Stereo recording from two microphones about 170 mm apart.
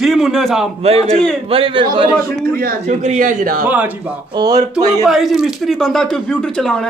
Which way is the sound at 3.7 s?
10° right (ahead or behind).